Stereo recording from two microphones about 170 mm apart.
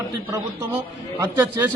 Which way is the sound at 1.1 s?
20° right (ahead or behind).